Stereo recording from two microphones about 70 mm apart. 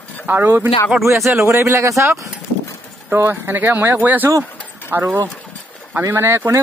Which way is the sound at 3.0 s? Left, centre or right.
Right.